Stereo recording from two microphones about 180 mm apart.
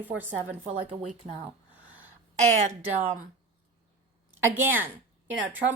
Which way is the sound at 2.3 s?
40° right (ahead or behind).